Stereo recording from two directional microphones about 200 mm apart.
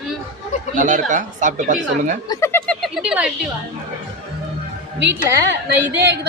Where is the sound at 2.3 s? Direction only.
15° left (ahead or behind).